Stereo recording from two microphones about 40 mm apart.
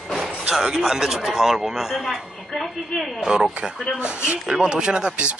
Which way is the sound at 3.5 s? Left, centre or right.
Right.